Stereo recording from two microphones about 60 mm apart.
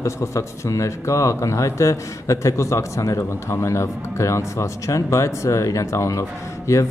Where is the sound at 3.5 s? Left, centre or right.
Left.